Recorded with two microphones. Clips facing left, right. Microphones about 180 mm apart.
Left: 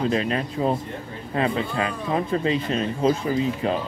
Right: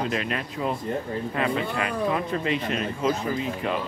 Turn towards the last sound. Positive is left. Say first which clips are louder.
# left 4 dB
turn(degrees=35)  # may be behind; listen again after turning